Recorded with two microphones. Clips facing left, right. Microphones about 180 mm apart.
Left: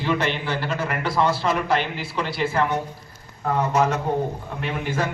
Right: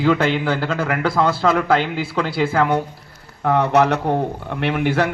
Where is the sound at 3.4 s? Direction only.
70° right (ahead or behind).